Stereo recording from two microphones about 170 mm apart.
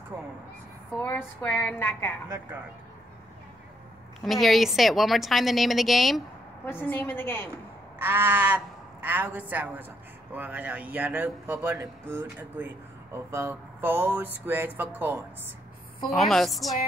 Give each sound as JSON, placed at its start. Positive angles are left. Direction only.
{"t": 1.0, "sound": "a woman's voice", "side_deg": 10}
{"t": 2.2, "sound": "speech", "side_deg": -15}
{"t": 4.2, "sound": "a woman's voice", "side_deg": 0}
{"t": 6.6, "sound": "a woman's voice", "side_deg": 10}
{"t": 8.0, "sound": "speech", "side_deg": -15}
{"t": 16.1, "sound": "a woman's voice", "side_deg": 0}